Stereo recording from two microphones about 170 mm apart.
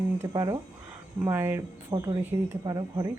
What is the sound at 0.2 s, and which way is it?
Speech, 25° right (ahead or behind).